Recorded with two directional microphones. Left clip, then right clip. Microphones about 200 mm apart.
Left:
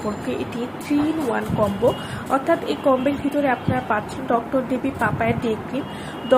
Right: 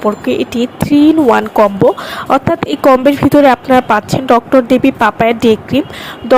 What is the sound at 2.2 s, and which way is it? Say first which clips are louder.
A woman's voice: right 8 dB; 50° right (ahead or behind).